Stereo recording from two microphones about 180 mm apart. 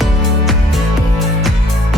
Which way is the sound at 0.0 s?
Centre (ahead or behind).